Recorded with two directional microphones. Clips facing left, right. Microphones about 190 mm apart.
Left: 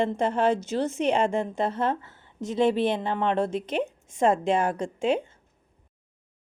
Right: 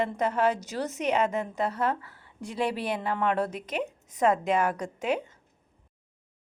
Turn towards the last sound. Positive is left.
turn(degrees=30)  # may be behind; listen again after turning